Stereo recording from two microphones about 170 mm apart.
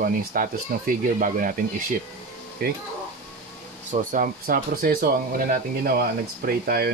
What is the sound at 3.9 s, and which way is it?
Speech, 50° right (ahead or behind).